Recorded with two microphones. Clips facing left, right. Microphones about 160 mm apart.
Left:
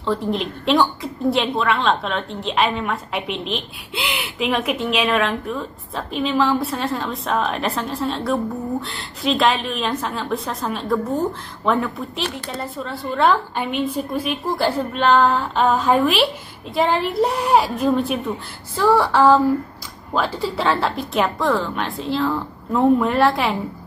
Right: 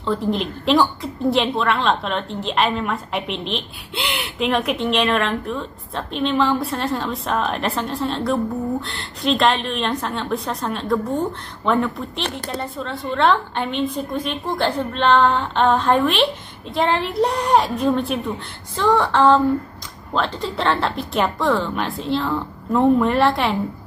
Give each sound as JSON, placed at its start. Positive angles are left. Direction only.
{"t": 0.0, "sound": "a woman's voice", "side_deg": 0}
{"t": 18.8, "sound": "female singing", "side_deg": 5}
{"t": 20.2, "sound": "a woman's voice", "side_deg": 5}